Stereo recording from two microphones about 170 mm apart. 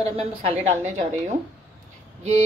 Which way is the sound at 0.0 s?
35° right (ahead or behind).